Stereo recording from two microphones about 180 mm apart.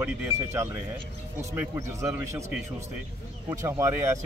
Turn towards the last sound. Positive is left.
turn(degrees=-15)  # may be behind; listen again after turning